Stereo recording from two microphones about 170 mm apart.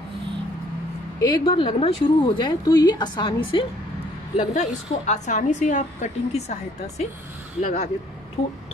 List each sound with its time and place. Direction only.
1.2 s speech: 25° left (ahead or behind)
4.4 s a woman's voice: 45° left (ahead or behind)